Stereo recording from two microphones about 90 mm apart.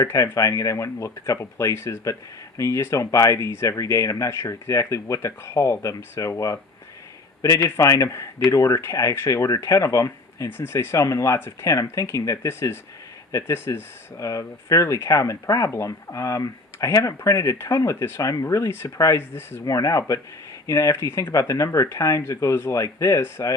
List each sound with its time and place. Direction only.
0.0 s speech: 35° left (ahead or behind)
19.6 s speech: 40° left (ahead or behind)